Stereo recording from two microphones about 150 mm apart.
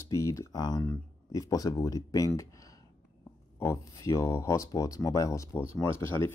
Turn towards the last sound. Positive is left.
turn(degrees=15)  # may be behind; listen again after turning